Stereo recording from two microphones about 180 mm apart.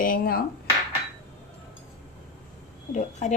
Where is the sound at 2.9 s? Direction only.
40° left (ahead or behind).